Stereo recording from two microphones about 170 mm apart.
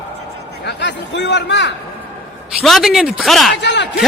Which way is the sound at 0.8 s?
90° left.